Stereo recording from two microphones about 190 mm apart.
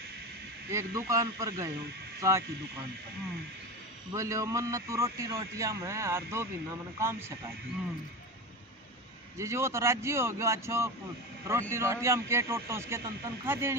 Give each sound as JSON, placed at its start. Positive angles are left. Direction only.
{"t": 0.7, "sound": "a man's voice", "side_deg": -15}
{"t": 4.1, "sound": "a man's voice", "side_deg": -15}
{"t": 9.4, "sound": "a man's voice", "side_deg": -15}